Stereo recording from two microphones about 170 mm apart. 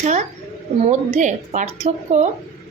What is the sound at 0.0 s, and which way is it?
A woman's voice, 45° right (ahead or behind).